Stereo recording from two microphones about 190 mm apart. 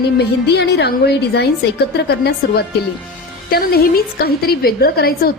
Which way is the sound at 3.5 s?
55° left (ahead or behind).